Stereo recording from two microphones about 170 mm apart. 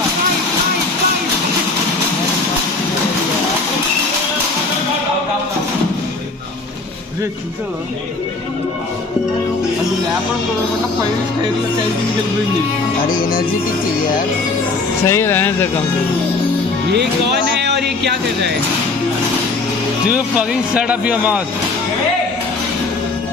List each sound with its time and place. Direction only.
15.0 s speech: 15° left (ahead or behind)
17.6 s a sound: 80° right
20.1 s speech: 5° right (ahead or behind)